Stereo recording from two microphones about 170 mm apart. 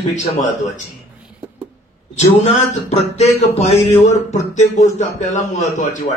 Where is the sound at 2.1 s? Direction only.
40° left (ahead or behind).